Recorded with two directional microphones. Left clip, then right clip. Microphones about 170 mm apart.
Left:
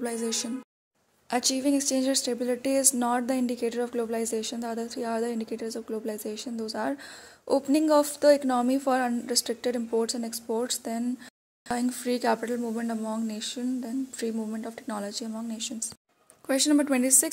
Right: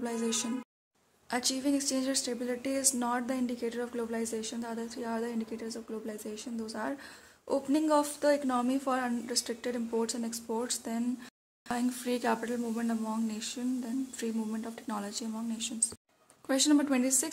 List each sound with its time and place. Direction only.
0.0 s speech: 25° left (ahead or behind)